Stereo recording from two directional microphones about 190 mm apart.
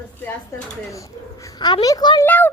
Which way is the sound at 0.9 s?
15° left (ahead or behind).